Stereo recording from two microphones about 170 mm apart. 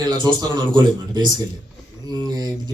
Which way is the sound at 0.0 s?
25° right (ahead or behind).